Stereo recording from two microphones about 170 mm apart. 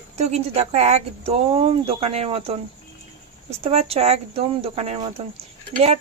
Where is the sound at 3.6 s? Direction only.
35° right (ahead or behind).